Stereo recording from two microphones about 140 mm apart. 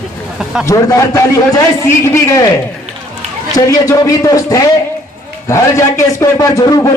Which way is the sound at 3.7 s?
25° left (ahead or behind).